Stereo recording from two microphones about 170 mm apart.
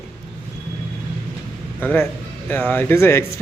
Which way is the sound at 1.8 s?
10° left (ahead or behind).